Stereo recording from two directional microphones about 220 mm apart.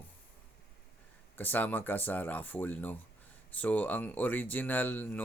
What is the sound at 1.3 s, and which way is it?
Speech, 10° left (ahead or behind).